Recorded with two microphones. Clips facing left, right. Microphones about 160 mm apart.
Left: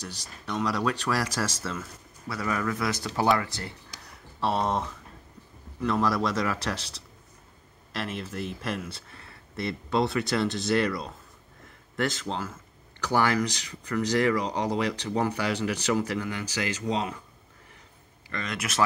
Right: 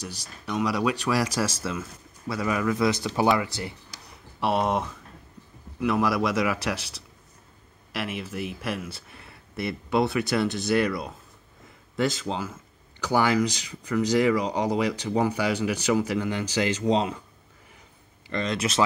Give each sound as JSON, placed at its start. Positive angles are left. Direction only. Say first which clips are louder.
{"t": 0.0, "sound": "speech", "louder": "right 2 dB", "side_deg": -10}
{"t": 18.3, "sound": "speech", "louder": "right 6 dB", "side_deg": -25}